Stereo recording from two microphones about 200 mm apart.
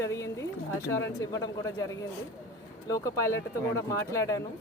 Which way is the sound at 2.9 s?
15° left (ahead or behind).